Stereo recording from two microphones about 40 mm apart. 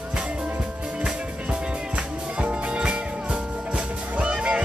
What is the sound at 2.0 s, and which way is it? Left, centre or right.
Music, right.